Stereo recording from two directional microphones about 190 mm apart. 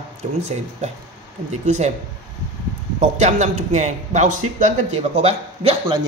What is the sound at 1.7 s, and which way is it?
Speech, 35° right (ahead or behind).